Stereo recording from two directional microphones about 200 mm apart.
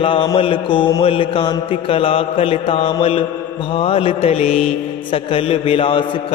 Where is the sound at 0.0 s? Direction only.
25° left (ahead or behind).